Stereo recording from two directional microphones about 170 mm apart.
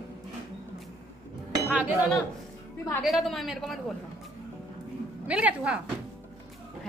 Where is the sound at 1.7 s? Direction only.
10° right (ahead or behind).